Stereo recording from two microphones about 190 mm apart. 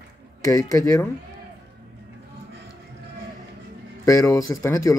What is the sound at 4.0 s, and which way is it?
Speech, 15° left (ahead or behind).